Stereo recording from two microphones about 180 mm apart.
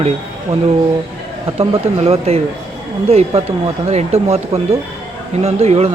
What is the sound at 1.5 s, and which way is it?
A man's voice, 35° right (ahead or behind).